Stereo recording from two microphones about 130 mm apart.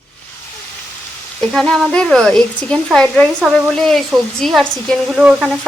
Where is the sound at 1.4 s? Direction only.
5° left (ahead or behind).